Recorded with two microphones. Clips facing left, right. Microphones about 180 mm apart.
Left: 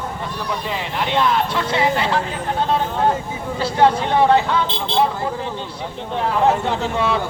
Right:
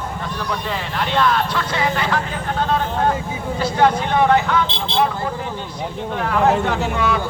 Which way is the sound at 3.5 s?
30° left (ahead or behind).